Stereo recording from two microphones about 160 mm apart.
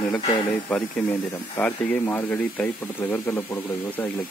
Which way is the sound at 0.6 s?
10° left (ahead or behind).